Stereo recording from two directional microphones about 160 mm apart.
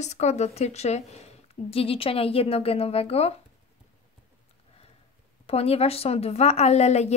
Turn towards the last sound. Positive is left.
turn(degrees=45)  # may be behind; listen again after turning